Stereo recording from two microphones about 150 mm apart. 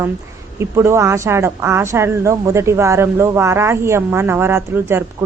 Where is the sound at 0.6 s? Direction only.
20° right (ahead or behind).